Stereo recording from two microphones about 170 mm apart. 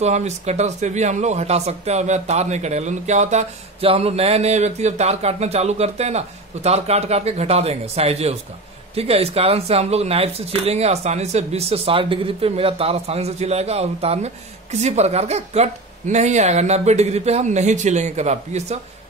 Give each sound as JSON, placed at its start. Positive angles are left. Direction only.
{"t": 0.0, "sound": "speech", "side_deg": -40}